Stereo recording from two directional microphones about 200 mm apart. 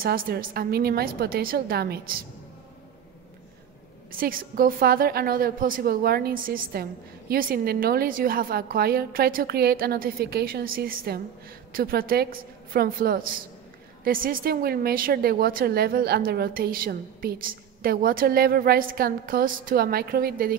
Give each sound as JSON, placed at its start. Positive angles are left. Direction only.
{"t": 0.0, "sound": "a woman's voice", "side_deg": -45}
{"t": 4.2, "sound": "a woman's voice", "side_deg": -45}